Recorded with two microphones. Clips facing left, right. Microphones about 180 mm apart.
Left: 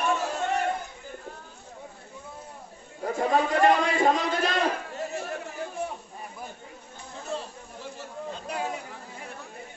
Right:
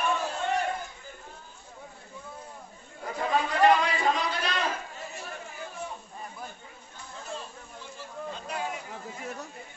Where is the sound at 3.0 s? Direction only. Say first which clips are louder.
Left 4 dB; 45° left (ahead or behind).